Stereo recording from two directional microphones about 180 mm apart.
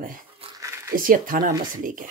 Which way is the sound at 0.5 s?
15° right (ahead or behind).